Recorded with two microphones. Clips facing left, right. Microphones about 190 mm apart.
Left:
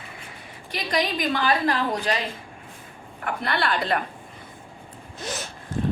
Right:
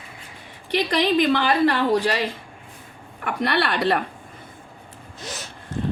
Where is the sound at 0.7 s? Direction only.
65° right (ahead or behind).